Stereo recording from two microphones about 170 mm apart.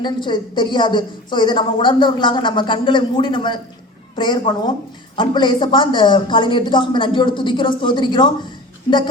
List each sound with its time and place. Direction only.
0.0 s a woman's voice: 25° left (ahead or behind)